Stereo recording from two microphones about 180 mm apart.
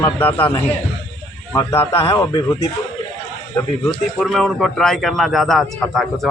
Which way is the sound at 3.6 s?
10° left (ahead or behind).